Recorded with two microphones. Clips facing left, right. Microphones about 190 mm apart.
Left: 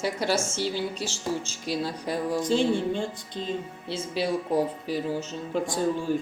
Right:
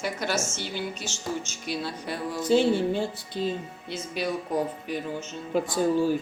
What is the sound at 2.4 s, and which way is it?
Music, 5° right (ahead or behind).